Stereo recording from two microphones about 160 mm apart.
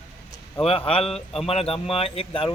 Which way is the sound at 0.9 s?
40° left (ahead or behind).